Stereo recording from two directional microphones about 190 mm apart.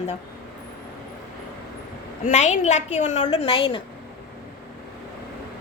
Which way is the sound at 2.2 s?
40° left (ahead or behind).